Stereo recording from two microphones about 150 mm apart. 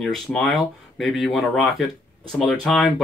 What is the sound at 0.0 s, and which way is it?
Speech, 5° left (ahead or behind).